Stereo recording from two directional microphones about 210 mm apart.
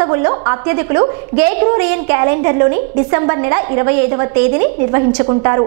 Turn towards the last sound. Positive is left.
turn(degrees=-20)  # may be behind; listen again after turning